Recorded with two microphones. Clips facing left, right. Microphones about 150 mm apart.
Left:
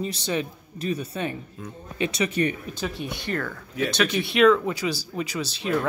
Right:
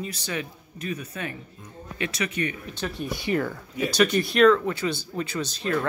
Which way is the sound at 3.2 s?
15° right (ahead or behind).